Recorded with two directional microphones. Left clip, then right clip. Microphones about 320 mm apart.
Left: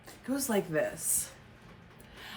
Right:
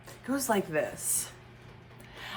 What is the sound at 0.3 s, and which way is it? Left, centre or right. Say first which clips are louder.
Speech: right 2 dB; centre.